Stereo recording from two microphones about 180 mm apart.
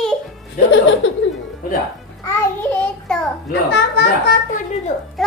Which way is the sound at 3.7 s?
70° left (ahead or behind).